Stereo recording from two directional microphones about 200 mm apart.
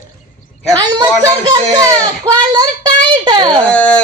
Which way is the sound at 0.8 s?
20° right (ahead or behind).